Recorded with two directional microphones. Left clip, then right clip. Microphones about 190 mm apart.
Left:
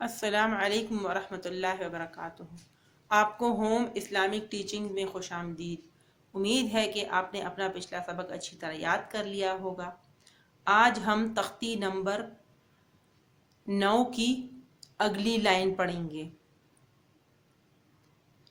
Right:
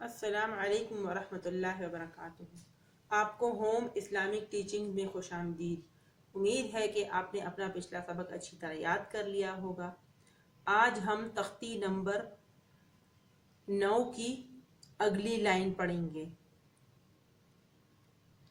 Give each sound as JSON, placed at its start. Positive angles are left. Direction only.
{"t": 0.0, "sound": "a woman's voice", "side_deg": 50}
{"t": 13.7, "sound": "a woman's voice", "side_deg": 55}